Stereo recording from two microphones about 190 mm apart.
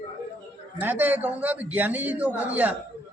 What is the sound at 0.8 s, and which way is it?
A man's voice, 10° right (ahead or behind).